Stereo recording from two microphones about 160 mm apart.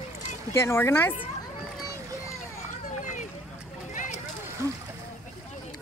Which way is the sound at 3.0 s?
50° left (ahead or behind).